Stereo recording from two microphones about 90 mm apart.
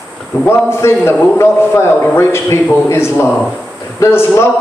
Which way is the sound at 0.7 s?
30° left (ahead or behind).